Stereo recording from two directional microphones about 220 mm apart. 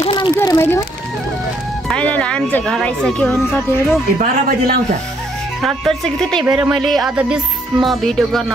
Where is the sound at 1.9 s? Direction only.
5° left (ahead or behind).